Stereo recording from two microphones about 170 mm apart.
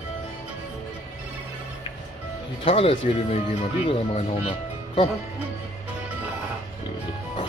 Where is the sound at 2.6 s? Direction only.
35° left (ahead or behind).